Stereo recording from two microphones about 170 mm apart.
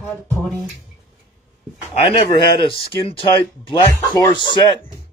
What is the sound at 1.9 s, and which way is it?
Speech, 35° left (ahead or behind).